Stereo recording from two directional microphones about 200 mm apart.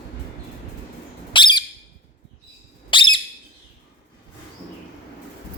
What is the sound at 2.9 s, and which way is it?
Squawk, 25° left (ahead or behind).